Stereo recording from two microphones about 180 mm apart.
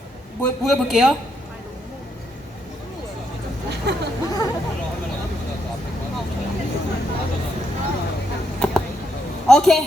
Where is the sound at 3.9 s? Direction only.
70° right (ahead or behind).